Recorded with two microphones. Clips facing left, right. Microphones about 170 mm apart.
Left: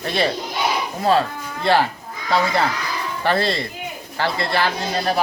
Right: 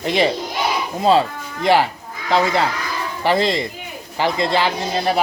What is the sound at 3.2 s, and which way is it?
Speech, 15° right (ahead or behind).